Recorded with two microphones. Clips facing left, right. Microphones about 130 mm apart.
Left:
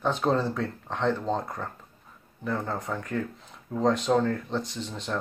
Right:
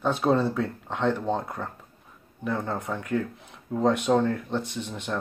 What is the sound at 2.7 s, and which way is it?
Speech, 10° right (ahead or behind).